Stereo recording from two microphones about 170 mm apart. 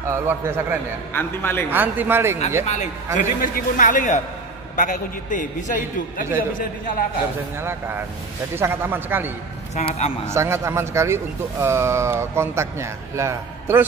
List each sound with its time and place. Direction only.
0.0 s a man's voice: 15° right (ahead or behind)
1.1 s speech: 15° left (ahead or behind)
1.7 s a man's voice: 10° right (ahead or behind)
2.6 s a man's voice: 45° left (ahead or behind)
3.2 s a man's voice: 55° left (ahead or behind)
7.5 s a man's voice: 15° right (ahead or behind)
9.8 s a man's voice: 40° left (ahead or behind)
10.2 s a man's voice: 15° right (ahead or behind)